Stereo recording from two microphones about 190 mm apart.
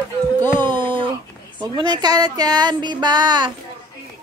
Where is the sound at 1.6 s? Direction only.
20° right (ahead or behind).